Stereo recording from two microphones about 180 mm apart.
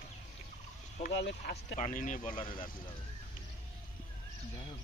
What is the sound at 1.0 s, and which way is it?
Speech, 65° left (ahead or behind).